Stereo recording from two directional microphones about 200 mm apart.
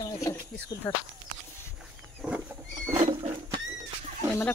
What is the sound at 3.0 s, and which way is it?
Rodents, 35° right (ahead or behind).